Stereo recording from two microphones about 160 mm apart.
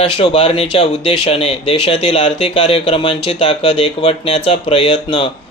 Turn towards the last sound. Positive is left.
turn(degrees=35)  # may be behind; listen again after turning